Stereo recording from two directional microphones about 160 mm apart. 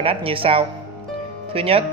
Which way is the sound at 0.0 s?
35° right (ahead or behind).